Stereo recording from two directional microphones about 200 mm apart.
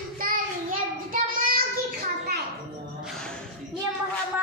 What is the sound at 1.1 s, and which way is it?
Child singing, 45° right (ahead or behind).